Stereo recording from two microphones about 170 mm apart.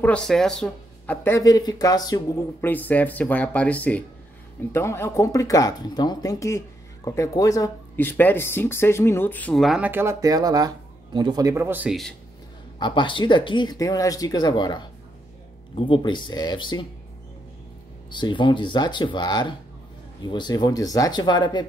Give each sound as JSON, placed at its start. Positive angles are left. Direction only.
{"t": 0.0, "sound": "speech", "side_deg": 5}
{"t": 2.6, "sound": "speech", "side_deg": 10}
{"t": 12.7, "sound": "speech", "side_deg": 30}
{"t": 18.1, "sound": "speech", "side_deg": 30}